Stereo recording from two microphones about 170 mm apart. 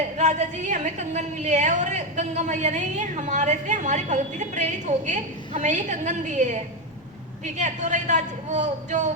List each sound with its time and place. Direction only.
0.2 s a woman's voice: 45° right (ahead or behind)
7.6 s a woman's voice: 45° right (ahead or behind)